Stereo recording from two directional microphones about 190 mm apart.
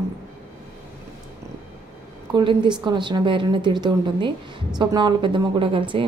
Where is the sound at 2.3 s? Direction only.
25° right (ahead or behind).